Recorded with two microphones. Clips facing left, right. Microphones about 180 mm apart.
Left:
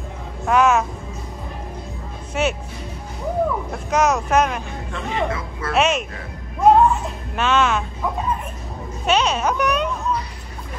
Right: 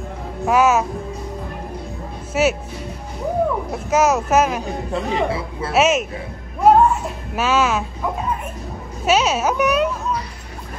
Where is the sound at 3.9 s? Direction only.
5° right (ahead or behind).